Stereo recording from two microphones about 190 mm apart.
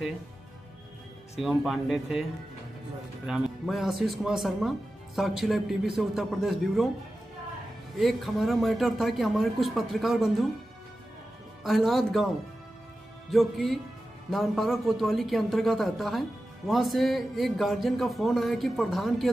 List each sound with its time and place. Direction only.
1.4 s speech: centre (ahead or behind)
3.3 s speech: 5° right (ahead or behind)
8.0 s speech: centre (ahead or behind)
11.6 s speech: centre (ahead or behind)
13.3 s speech: centre (ahead or behind)